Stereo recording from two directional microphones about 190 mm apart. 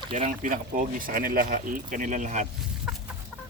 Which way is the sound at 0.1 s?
40° right (ahead or behind).